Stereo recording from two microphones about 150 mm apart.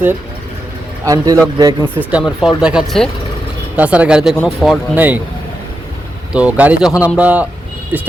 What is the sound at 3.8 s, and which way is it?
Speech, 10° right (ahead or behind).